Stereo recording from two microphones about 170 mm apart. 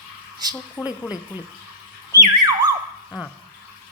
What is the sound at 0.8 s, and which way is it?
Speech, 10° right (ahead or behind).